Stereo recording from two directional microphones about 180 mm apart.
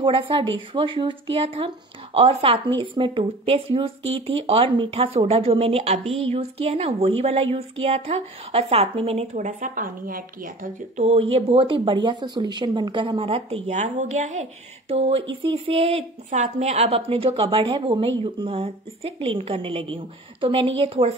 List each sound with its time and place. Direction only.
0.0 s speech: 30° right (ahead or behind)